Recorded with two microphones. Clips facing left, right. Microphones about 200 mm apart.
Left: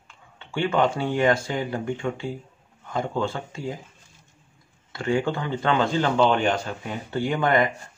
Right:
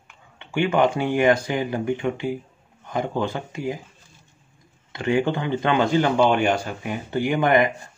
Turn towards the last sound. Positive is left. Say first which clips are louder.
# right 3 dB
turn(degrees=-15)  # may be behind; listen again after turning